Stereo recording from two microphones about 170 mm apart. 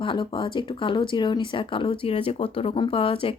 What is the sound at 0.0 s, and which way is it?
Speech, 30° left (ahead or behind).